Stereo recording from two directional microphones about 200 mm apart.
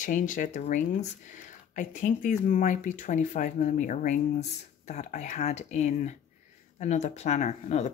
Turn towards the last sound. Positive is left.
turn(degrees=35)  # may be behind; listen again after turning